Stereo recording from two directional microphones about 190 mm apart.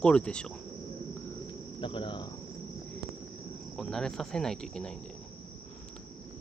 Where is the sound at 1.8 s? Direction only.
25° left (ahead or behind).